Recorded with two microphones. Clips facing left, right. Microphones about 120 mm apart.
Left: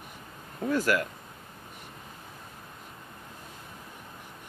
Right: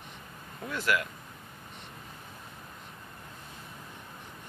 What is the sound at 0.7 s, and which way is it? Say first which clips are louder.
Speech: left 4 dB; 40° left (ahead or behind).